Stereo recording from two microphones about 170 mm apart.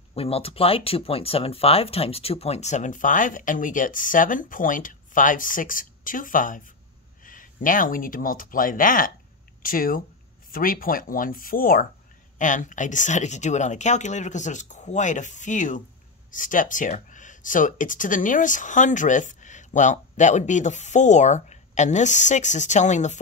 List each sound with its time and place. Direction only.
0.1 s speech: 35° left (ahead or behind)